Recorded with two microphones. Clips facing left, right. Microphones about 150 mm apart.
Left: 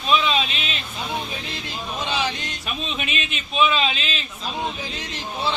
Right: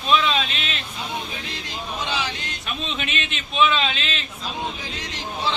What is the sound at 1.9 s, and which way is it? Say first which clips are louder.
Speech: left 3 dB; 10° left (ahead or behind).